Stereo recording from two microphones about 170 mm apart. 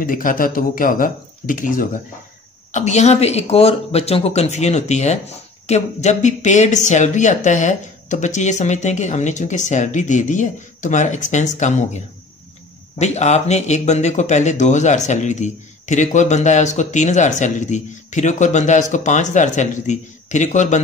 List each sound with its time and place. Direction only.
0.0 s speech: 55° left (ahead or behind)
2.7 s speech: 40° left (ahead or behind)
13.0 s speech: 40° left (ahead or behind)